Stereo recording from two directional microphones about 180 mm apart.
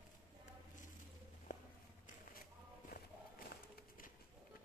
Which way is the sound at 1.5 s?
45° left (ahead or behind).